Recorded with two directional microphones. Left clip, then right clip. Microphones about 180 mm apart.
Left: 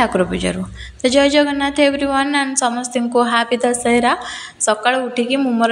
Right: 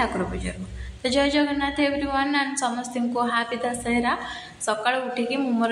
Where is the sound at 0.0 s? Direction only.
45° left (ahead or behind).